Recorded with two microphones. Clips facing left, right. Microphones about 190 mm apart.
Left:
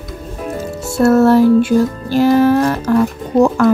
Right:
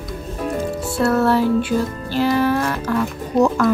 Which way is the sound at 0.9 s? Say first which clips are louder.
Left 7 dB; 45° left (ahead or behind).